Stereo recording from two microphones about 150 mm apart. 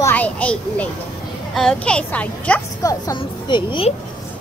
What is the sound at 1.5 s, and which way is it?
A woman's voice, centre (ahead or behind).